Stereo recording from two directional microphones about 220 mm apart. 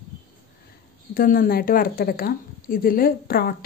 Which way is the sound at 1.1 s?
40° left (ahead or behind).